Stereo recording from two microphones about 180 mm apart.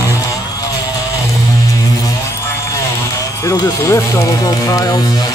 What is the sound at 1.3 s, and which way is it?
Music, 20° left (ahead or behind).